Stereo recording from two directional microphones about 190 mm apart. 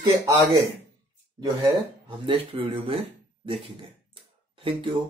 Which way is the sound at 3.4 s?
30° right (ahead or behind).